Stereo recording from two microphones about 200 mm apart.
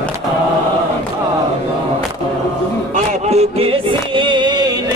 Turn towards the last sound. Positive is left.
turn(degrees=-20)  # may be behind; listen again after turning